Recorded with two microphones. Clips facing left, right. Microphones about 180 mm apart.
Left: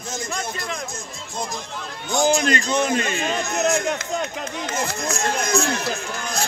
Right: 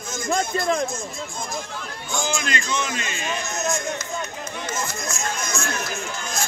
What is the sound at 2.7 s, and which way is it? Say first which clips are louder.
A man's voice: left 6 dB; 55° left (ahead or behind).